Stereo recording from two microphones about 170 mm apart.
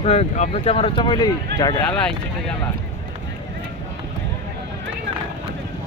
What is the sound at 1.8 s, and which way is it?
Speech, 5° left (ahead or behind).